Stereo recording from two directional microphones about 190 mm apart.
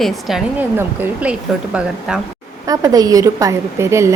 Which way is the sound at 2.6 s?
20° right (ahead or behind).